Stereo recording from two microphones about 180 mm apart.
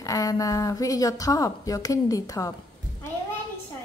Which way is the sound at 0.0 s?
20° left (ahead or behind).